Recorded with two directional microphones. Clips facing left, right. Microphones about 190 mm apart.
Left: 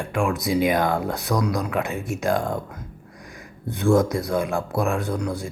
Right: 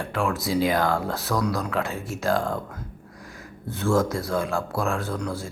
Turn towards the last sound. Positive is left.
turn(degrees=15)  # may be behind; listen again after turning